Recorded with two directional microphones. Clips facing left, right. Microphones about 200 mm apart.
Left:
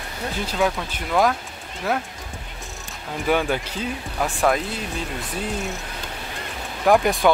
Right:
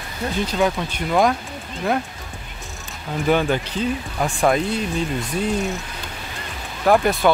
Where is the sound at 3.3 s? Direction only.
10° left (ahead or behind).